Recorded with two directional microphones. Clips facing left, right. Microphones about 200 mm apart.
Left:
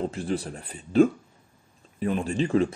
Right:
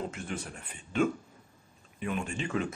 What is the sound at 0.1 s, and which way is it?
Speech, 35° left (ahead or behind).